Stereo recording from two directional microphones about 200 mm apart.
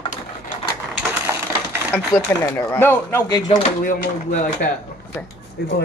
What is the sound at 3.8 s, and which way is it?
Speech, 45° left (ahead or behind).